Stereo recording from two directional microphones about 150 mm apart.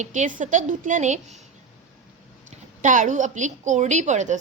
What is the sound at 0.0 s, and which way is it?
A woman's voice, 55° right (ahead or behind).